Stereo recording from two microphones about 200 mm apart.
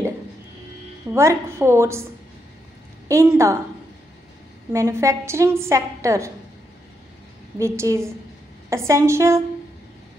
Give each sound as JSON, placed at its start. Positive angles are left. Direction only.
{"t": 1.1, "sound": "a woman's voice", "side_deg": -15}
{"t": 3.1, "sound": "a woman's voice", "side_deg": -15}
{"t": 4.7, "sound": "a woman's voice", "side_deg": -15}
{"t": 7.5, "sound": "a woman's voice", "side_deg": -15}